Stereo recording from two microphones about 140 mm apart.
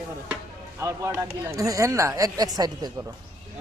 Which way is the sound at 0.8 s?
20° right (ahead or behind).